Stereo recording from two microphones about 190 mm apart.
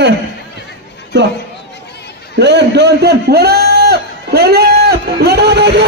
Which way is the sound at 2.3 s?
65° right (ahead or behind).